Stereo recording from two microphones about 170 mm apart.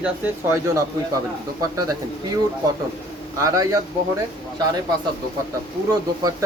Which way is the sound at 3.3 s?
20° right (ahead or behind).